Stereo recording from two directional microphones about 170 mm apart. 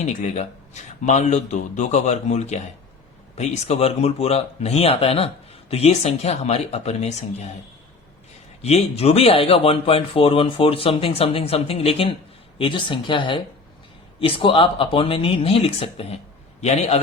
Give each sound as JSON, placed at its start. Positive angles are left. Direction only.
{"t": 0.0, "sound": "speech", "side_deg": 45}
{"t": 8.6, "sound": "speech", "side_deg": 35}